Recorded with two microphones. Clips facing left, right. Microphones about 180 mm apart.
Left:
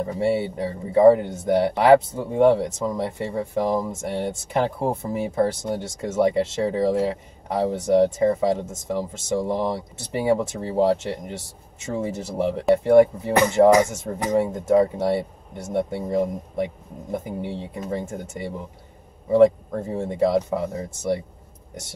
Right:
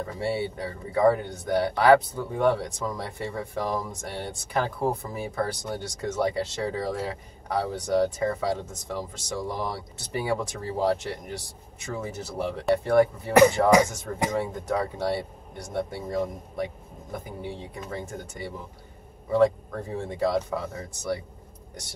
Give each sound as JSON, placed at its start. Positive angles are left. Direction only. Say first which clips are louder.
{"t": 0.0, "sound": "speech", "louder": "left 6 dB", "side_deg": 20}
{"t": 20.2, "sound": "speech", "louder": "left 5 dB", "side_deg": 20}